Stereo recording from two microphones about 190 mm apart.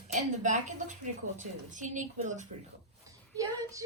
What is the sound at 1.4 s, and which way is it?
Speech, 40° right (ahead or behind).